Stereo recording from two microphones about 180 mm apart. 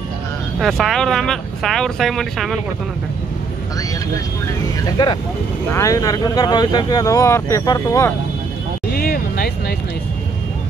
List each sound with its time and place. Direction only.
0.6 s speech: centre (ahead or behind)
5.0 s speech: 25° left (ahead or behind)
8.9 s vehicle: 55° left (ahead or behind)